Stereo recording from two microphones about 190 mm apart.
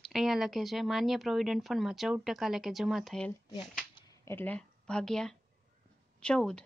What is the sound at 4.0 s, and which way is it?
Speech, 15° left (ahead or behind).